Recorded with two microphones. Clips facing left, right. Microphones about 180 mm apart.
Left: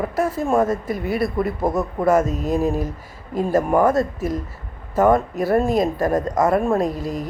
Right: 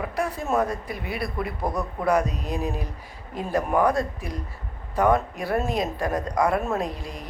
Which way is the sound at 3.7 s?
45° left (ahead or behind).